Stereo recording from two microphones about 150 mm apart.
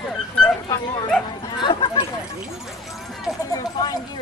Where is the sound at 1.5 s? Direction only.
35° left (ahead or behind).